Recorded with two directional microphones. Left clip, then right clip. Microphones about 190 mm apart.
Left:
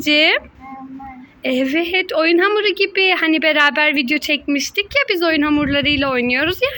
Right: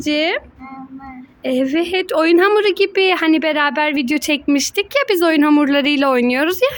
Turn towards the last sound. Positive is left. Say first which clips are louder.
# right 1 dB
turn(degrees=-30)  # may be behind; listen again after turning